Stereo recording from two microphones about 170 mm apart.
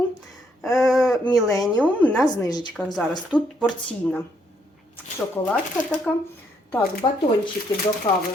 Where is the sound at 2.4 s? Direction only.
25° left (ahead or behind).